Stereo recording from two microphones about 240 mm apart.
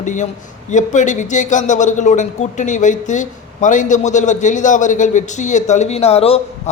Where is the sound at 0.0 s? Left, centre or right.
Left.